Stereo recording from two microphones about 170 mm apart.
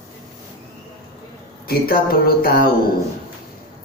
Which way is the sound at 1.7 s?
60° left (ahead or behind).